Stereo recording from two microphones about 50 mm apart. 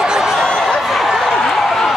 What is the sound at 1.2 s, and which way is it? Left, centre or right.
Run, centre.